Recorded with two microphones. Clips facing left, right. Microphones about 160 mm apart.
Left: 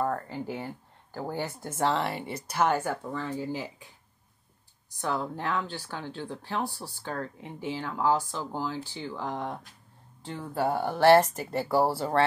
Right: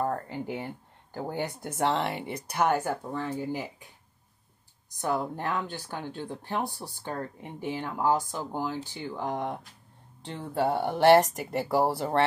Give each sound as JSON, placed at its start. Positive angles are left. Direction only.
{"t": 0.0, "sound": "speech", "side_deg": -20}
{"t": 5.0, "sound": "speech", "side_deg": -15}